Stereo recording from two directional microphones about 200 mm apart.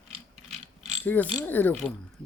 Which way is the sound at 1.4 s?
10° left (ahead or behind).